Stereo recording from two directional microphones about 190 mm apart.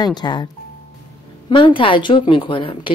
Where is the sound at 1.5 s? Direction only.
25° left (ahead or behind).